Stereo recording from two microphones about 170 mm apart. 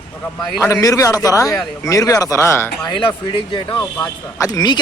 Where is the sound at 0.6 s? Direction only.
20° left (ahead or behind).